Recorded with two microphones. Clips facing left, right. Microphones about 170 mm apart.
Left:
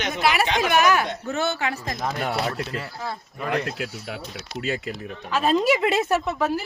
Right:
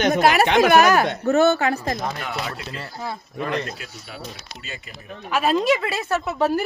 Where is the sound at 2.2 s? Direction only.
45° left (ahead or behind).